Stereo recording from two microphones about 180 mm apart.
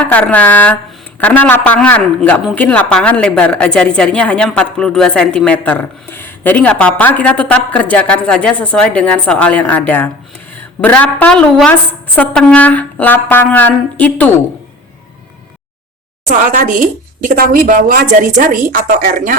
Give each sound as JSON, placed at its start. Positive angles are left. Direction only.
{"t": 0.1, "sound": "speech", "side_deg": 10}
{"t": 16.2, "sound": "a woman's voice", "side_deg": -45}